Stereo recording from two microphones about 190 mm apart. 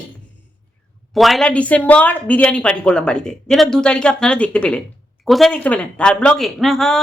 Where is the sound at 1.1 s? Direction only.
Centre (ahead or behind).